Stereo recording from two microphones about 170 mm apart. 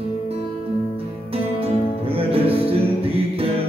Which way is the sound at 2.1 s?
35° right (ahead or behind).